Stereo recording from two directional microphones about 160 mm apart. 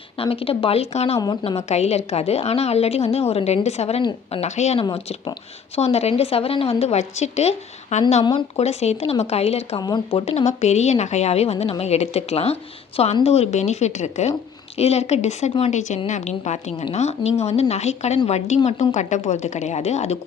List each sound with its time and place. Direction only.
0.2 s speech: 35° left (ahead or behind)
1.2 s a woman's voice: 25° left (ahead or behind)
1.5 s speech: 45° left (ahead or behind)
8.2 s a woman's voice: 30° left (ahead or behind)
8.5 s speech: 40° left (ahead or behind)